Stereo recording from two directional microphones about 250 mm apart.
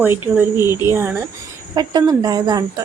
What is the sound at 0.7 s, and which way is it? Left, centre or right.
Speech, centre.